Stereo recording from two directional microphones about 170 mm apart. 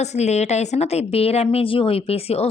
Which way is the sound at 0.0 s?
40° left (ahead or behind).